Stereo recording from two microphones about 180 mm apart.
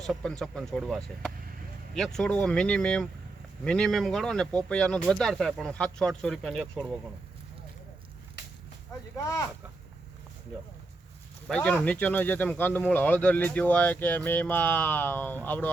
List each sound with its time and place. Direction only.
0.0 s speech: 5° left (ahead or behind)
9.1 s speech: 15° left (ahead or behind)
11.4 s speech: 5° left (ahead or behind)